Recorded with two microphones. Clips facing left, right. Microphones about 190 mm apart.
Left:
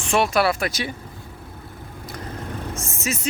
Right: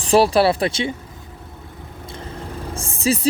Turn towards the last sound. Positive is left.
turn(degrees=-30)  # may be behind; listen again after turning